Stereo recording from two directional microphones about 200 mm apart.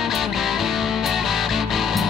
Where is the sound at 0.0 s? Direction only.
Centre (ahead or behind).